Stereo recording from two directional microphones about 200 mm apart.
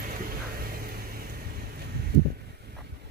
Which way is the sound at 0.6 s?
50° right (ahead or behind).